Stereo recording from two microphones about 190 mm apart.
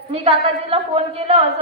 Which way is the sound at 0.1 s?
30° right (ahead or behind).